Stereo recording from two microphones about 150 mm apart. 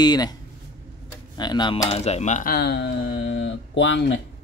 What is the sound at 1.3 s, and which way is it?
Speech, 30° left (ahead or behind).